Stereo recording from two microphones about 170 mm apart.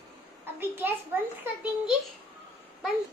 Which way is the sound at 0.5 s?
10° right (ahead or behind).